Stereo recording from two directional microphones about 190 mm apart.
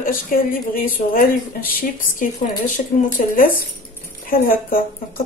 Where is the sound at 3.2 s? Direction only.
50° left (ahead or behind).